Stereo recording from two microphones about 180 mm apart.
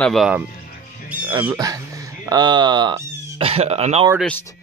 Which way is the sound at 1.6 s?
20° right (ahead or behind).